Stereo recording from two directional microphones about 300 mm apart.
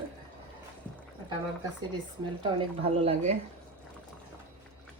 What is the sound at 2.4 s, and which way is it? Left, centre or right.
Speech, centre.